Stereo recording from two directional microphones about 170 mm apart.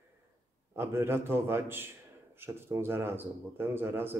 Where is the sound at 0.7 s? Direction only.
15° right (ahead or behind).